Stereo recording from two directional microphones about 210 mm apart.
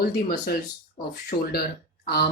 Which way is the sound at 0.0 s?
45° left (ahead or behind).